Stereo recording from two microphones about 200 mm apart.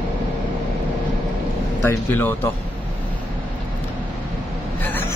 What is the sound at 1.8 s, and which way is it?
Speech, 10° left (ahead or behind).